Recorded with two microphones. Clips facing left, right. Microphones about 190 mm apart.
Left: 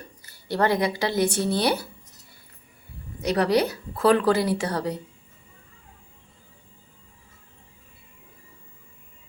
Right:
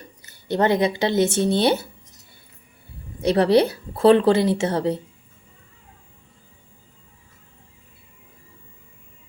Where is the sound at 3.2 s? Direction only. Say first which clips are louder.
Right 5 dB; 30° right (ahead or behind).